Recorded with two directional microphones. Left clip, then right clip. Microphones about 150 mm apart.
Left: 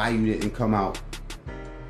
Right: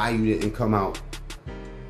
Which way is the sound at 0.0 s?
10° right (ahead or behind).